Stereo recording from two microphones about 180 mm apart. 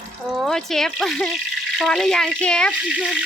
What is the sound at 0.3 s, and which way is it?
Speech, centre (ahead or behind).